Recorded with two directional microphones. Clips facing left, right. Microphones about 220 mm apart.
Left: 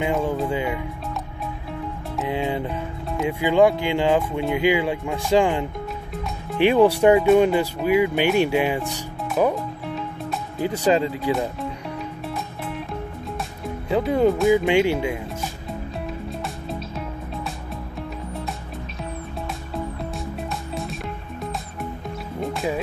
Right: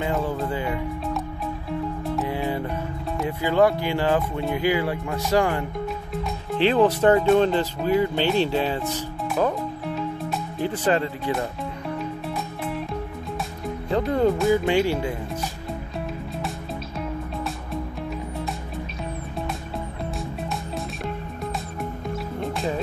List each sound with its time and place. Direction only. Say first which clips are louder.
0.0 s speech: left 3 dB; 15° left (ahead or behind)
2.2 s music: left 5 dB; 15° left (ahead or behind)
3.2 s speech: left 3 dB; 15° left (ahead or behind)
10.8 s speech: left 4 dB; 10° left (ahead or behind)
13.8 s speech: left 2 dB; 5° left (ahead or behind)
20.7 s music: even; centre (ahead or behind)
22.5 s music: left 2 dB; centre (ahead or behind)